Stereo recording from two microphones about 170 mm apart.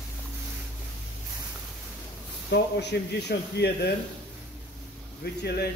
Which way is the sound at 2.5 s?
75° left (ahead or behind).